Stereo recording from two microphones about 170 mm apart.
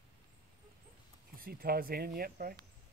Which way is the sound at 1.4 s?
60° right (ahead or behind).